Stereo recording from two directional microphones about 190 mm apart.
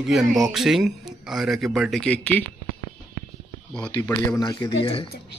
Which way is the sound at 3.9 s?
15° left (ahead or behind).